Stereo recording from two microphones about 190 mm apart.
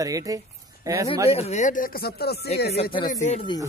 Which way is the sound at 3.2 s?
35° left (ahead or behind).